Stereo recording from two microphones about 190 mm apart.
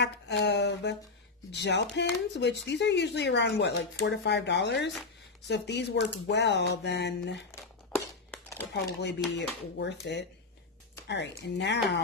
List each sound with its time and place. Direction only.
0.0 s a sound: 65° left (ahead or behind)
1.5 s speech: 65° left (ahead or behind)
7.5 s crumpling: 10° left (ahead or behind)
8.7 s speech: 60° left (ahead or behind)
11.5 s speech: 65° left (ahead or behind)